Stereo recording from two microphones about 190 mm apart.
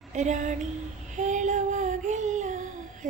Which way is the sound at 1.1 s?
40° right (ahead or behind).